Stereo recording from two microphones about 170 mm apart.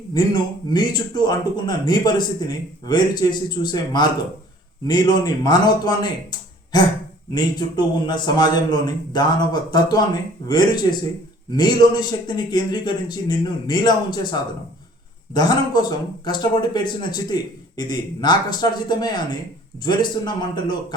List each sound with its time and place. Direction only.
0.7 s a man's voice: 25° left (ahead or behind)